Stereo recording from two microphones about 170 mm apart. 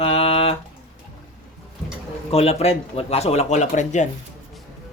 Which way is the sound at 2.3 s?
35° left (ahead or behind).